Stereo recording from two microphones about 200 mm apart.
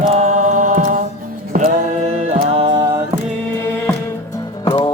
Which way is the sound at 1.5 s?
35° right (ahead or behind).